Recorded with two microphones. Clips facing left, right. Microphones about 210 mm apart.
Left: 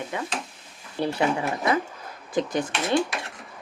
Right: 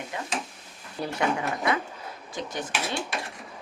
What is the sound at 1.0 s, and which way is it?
Speech, centre (ahead or behind).